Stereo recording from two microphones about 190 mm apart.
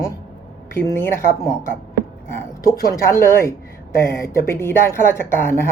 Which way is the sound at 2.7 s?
15° left (ahead or behind).